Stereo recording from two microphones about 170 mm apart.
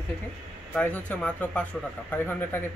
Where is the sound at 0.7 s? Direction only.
10° left (ahead or behind).